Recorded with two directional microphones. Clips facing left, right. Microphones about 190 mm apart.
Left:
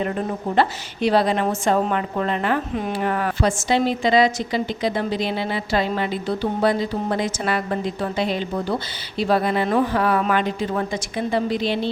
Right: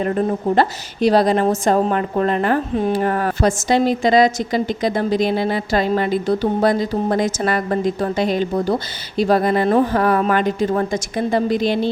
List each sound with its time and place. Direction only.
0.5 s a woman's voice: 40° right (ahead or behind)